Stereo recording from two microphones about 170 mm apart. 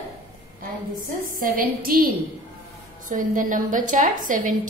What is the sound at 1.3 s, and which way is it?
Speech, 55° right (ahead or behind).